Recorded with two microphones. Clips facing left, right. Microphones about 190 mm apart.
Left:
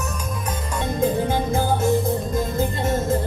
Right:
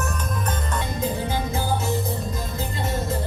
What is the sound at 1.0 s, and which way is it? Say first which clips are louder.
Music: left 7 dB; 50° left (ahead or behind).